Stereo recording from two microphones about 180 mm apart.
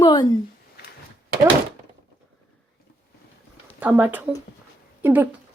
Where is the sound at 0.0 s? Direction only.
25° left (ahead or behind).